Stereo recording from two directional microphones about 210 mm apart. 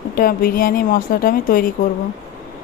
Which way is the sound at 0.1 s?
45° left (ahead or behind).